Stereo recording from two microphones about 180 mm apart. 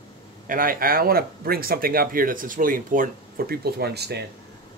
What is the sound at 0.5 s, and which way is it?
Speech, 50° right (ahead or behind).